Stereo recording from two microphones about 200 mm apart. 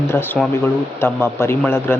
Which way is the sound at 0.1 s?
10° left (ahead or behind).